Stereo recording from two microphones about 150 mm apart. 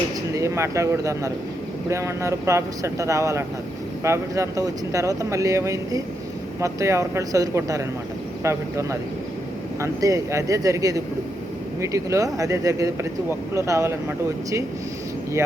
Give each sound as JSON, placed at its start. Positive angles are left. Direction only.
{"t": 0.3, "sound": "speech", "side_deg": -20}